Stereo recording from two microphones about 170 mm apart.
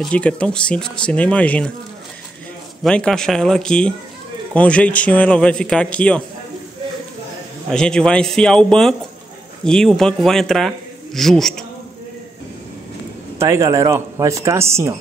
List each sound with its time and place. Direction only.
0.0 s speech: 5° left (ahead or behind)
2.8 s a man's voice: 5° left (ahead or behind)
7.7 s speech: 5° left (ahead or behind)
13.4 s speech: 15° right (ahead or behind)